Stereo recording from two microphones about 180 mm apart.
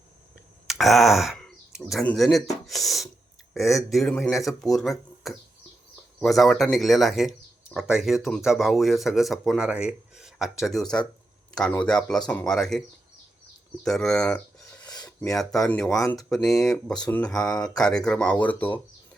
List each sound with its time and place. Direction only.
0.7 s speech: centre (ahead or behind)
13.8 s speech: 5° left (ahead or behind)
14.8 s a sound: 20° left (ahead or behind)
15.3 s speech: 5° left (ahead or behind)
15.9 s speech: 20° left (ahead or behind)
16.3 s speech: centre (ahead or behind)